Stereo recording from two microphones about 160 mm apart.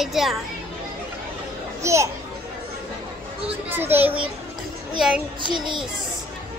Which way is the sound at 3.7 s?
10° right (ahead or behind).